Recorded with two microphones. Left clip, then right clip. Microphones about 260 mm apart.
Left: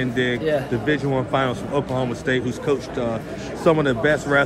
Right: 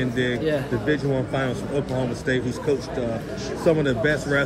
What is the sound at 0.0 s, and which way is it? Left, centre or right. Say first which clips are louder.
Speech: left 2 dB; left.